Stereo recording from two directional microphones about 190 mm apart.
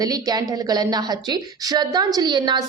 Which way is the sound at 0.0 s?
20° right (ahead or behind).